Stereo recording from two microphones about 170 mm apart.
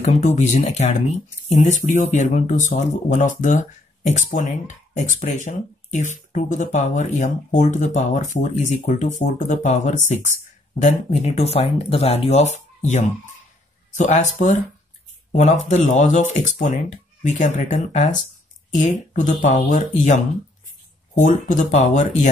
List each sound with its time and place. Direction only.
0.0 s speech: 40° left (ahead or behind)